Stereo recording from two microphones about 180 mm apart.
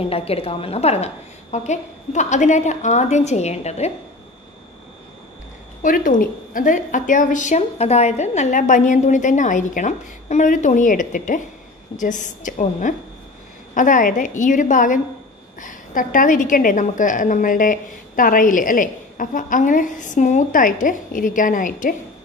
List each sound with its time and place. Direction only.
0.0 s a woman's voice: 35° left (ahead or behind)
5.8 s a woman's voice: 50° left (ahead or behind)